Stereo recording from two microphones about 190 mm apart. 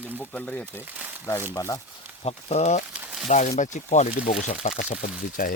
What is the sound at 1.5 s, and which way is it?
Speech, 15° left (ahead or behind).